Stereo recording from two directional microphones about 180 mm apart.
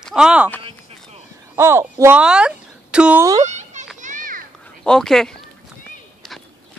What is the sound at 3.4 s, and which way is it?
Children playing, 40° right (ahead or behind).